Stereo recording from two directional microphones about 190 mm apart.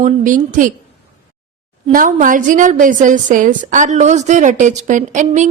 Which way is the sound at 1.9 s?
45° right (ahead or behind).